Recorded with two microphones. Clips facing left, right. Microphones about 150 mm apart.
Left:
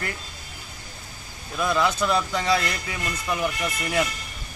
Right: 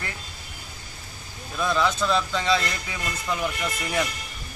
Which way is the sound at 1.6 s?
15° left (ahead or behind).